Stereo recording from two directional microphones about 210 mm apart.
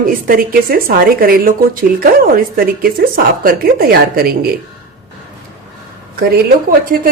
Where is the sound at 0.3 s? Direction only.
45° right (ahead or behind).